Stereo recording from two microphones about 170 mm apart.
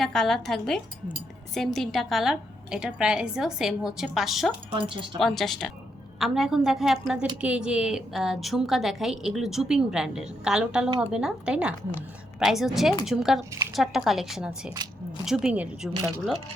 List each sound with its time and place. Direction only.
0.0 s a woman's voice: centre (ahead or behind)
4.7 s speech: 30° right (ahead or behind)
5.2 s a woman's voice: centre (ahead or behind)